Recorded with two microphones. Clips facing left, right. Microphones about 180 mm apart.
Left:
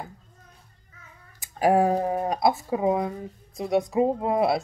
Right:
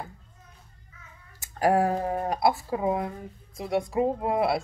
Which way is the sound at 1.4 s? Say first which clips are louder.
Left 2 dB; 15° left (ahead or behind).